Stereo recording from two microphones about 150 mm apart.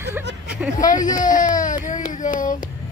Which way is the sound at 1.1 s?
60° left (ahead or behind).